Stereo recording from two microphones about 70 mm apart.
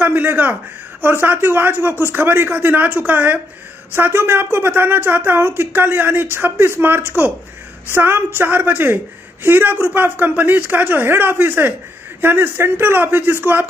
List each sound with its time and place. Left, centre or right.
0.0 s speech: right